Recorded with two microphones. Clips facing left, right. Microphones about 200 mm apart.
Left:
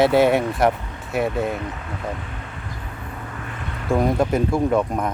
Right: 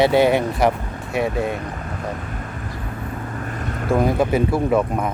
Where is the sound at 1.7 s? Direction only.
45° right (ahead or behind).